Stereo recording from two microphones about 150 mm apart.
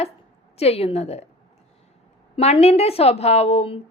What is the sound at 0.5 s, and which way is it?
Speech, 45° left (ahead or behind).